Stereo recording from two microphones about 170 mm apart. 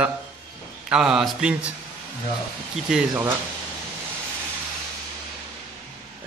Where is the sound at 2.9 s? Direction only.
5° right (ahead or behind).